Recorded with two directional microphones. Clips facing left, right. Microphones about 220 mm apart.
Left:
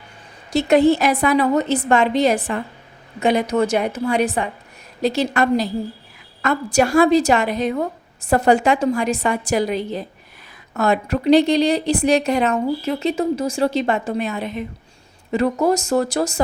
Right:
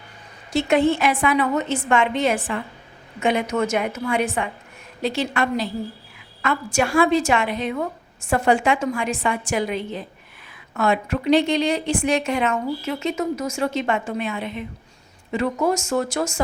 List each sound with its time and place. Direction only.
0.5 s a woman's voice: 40° left (ahead or behind)